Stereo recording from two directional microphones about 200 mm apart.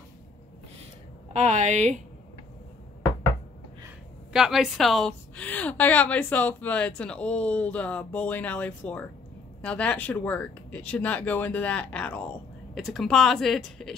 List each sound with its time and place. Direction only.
1.3 s a woman's voice: 35° right (ahead or behind)
4.3 s a woman's voice: centre (ahead or behind)